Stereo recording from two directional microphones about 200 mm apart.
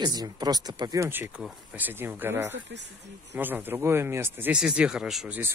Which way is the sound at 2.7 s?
60° right (ahead or behind).